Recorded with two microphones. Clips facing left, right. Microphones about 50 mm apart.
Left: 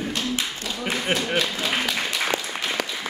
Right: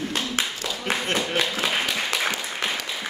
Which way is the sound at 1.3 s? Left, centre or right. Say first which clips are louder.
Even; right.